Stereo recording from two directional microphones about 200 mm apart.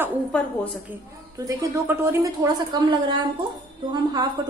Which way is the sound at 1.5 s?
15° right (ahead or behind).